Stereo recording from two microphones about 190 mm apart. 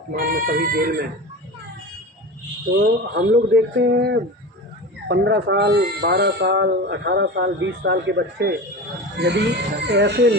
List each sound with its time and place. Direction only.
0.1 s speech: 50° right (ahead or behind)
2.8 s speech: 65° right (ahead or behind)